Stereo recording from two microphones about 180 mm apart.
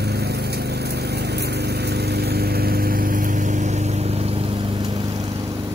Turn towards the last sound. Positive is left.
turn(degrees=-30)  # may be behind; listen again after turning